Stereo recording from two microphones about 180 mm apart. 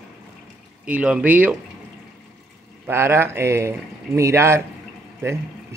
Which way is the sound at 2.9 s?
15° right (ahead or behind).